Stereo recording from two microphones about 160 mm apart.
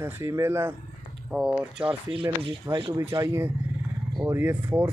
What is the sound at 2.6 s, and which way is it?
Speech, 25° right (ahead or behind).